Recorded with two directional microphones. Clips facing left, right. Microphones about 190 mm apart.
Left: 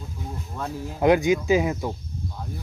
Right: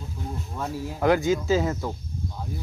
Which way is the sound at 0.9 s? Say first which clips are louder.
Left 3 dB; 20° left (ahead or behind).